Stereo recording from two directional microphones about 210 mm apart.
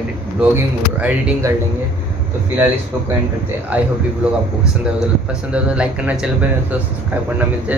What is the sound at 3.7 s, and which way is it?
Speech, 5° right (ahead or behind).